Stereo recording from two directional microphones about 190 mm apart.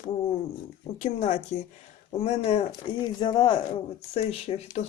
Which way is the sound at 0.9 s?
40° left (ahead or behind).